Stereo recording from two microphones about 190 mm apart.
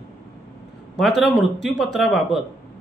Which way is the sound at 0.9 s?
Centre (ahead or behind).